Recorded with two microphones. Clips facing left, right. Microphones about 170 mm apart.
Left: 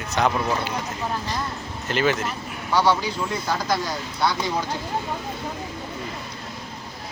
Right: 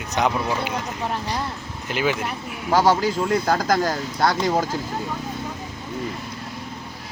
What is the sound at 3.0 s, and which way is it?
Speech, 55° right (ahead or behind).